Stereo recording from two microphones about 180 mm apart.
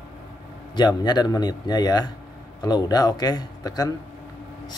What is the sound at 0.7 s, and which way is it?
Speech, 25° left (ahead or behind).